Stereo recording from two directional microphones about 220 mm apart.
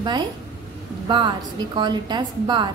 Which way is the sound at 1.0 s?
20° right (ahead or behind).